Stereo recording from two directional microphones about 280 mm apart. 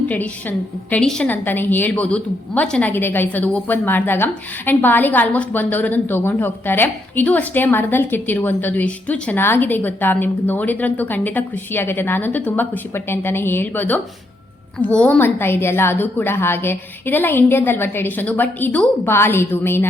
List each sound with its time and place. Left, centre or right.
0.1 s a woman's voice: centre